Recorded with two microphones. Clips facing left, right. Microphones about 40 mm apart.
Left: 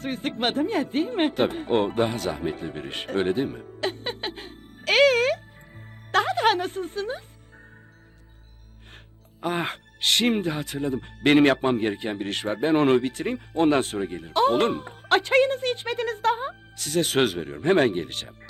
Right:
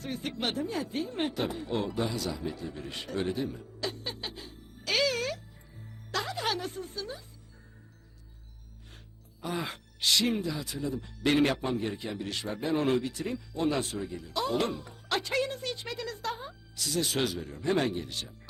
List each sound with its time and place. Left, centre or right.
0.0 s speech: left
6.1 s music: left
9.4 s speech: left